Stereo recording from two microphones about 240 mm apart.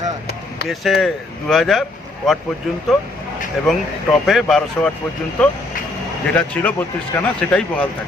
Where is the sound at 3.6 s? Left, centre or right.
Centre.